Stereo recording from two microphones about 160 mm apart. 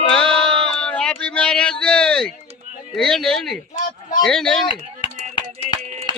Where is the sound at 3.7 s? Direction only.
60° left (ahead or behind).